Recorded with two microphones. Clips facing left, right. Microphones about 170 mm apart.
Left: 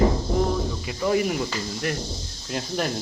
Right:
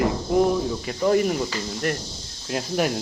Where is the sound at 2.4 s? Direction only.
5° right (ahead or behind).